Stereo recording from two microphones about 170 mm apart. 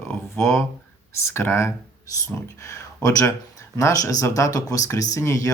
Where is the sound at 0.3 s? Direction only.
15° left (ahead or behind).